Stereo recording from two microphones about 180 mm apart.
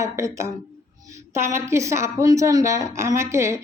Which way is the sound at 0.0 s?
15° right (ahead or behind).